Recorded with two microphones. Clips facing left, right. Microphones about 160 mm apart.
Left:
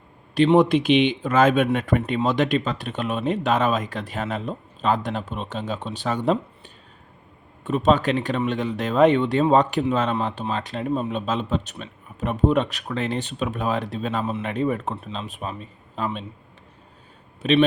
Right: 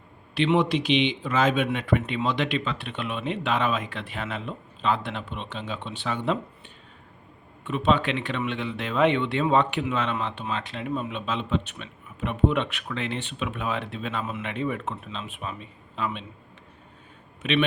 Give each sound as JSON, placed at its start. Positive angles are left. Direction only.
{"t": 0.3, "sound": "speech", "side_deg": 45}
{"t": 7.6, "sound": "speech", "side_deg": 40}
{"t": 17.4, "sound": "speech", "side_deg": 35}